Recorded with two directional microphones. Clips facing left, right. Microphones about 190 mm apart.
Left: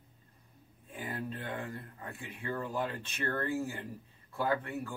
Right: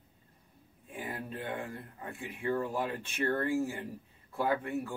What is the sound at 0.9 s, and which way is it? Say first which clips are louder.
Speech: even; 10° right (ahead or behind).